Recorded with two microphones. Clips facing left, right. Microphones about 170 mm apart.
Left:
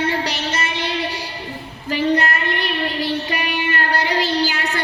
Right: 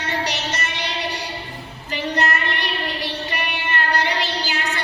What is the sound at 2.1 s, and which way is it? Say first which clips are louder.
Child singing: even; 55° left (ahead or behind).